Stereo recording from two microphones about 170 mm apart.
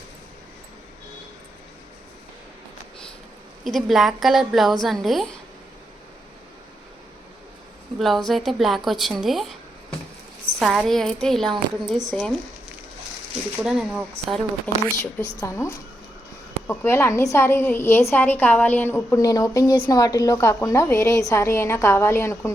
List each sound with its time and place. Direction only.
3.6 s a woman's voice: centre (ahead or behind)
7.9 s a woman's voice: centre (ahead or behind)
10.6 s a woman's voice: centre (ahead or behind)
13.6 s a woman's voice: 5° right (ahead or behind)
14.8 s a woman's voice: 10° left (ahead or behind)